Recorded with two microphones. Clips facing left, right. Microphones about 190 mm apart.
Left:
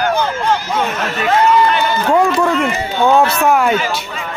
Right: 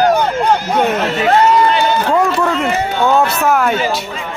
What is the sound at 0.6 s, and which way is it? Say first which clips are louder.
Speech: right 4 dB; 60° right (ahead or behind).